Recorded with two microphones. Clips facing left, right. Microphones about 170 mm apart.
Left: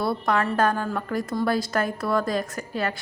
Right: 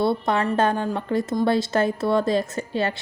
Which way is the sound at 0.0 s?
25° right (ahead or behind).